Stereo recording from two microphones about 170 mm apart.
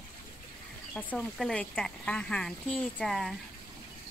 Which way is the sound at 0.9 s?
5° left (ahead or behind).